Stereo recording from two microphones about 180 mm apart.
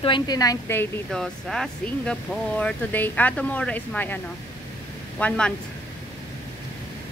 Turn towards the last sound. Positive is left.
turn(degrees=5)  # may be behind; listen again after turning